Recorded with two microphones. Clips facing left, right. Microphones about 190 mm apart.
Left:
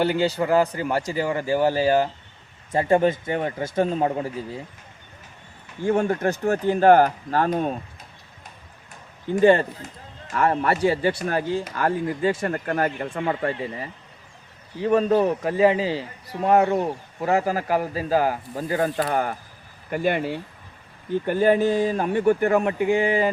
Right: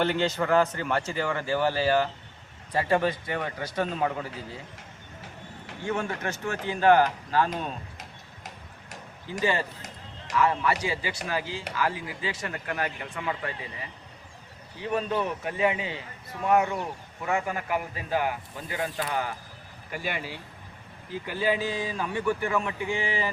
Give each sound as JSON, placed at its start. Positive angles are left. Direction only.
{"t": 0.0, "sound": "speech", "side_deg": 10}
{"t": 5.9, "sound": "speech", "side_deg": 35}
{"t": 9.4, "sound": "a man's voice", "side_deg": 55}